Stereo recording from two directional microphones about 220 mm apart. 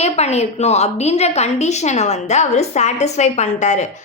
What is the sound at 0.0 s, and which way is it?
A woman's voice, 30° left (ahead or behind).